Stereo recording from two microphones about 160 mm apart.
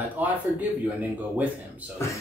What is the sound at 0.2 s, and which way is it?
Speech, 10° right (ahead or behind).